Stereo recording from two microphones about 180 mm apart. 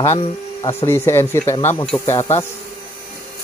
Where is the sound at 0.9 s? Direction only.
15° left (ahead or behind).